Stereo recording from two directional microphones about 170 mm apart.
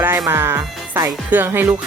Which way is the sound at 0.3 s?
15° right (ahead or behind).